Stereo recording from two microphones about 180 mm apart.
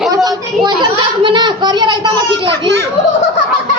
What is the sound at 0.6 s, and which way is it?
A child's voice, 25° right (ahead or behind).